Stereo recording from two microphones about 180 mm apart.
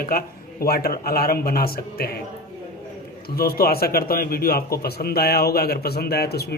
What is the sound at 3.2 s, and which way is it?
A man's voice, 55° left (ahead or behind).